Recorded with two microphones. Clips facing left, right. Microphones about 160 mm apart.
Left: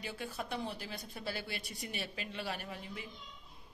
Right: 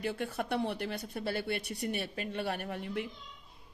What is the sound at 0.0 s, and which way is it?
A woman's voice, 55° right (ahead or behind).